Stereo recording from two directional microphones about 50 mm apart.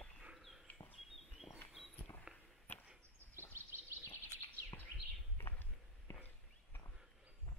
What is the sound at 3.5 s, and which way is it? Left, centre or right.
Bird vocalization, right.